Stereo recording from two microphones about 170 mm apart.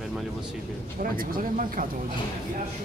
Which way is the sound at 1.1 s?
55° right (ahead or behind).